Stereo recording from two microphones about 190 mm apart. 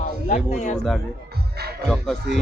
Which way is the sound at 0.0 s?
40° left (ahead or behind).